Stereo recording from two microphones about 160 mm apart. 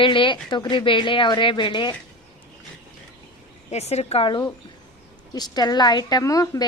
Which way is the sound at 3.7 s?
40° left (ahead or behind).